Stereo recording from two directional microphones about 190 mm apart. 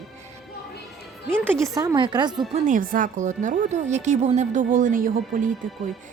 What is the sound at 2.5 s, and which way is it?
A woman's voice, 40° right (ahead or behind).